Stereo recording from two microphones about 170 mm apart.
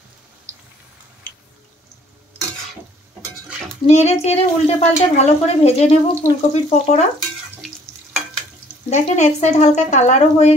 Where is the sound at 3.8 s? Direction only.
40° left (ahead or behind).